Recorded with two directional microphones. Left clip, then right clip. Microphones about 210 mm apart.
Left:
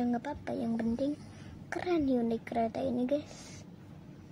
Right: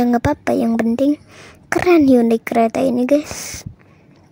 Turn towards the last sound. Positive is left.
turn(degrees=-50)  # may be behind; listen again after turning